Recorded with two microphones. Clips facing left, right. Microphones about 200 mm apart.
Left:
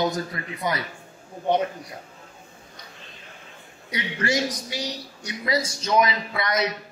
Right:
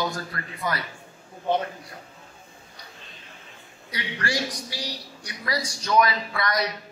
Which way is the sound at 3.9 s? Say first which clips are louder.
Left 4 dB; 20° left (ahead or behind).